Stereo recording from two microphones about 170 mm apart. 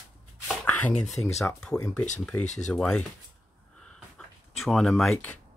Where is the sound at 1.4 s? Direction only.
10° left (ahead or behind).